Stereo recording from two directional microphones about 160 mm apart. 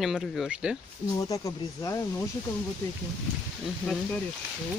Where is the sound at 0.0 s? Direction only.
Centre (ahead or behind).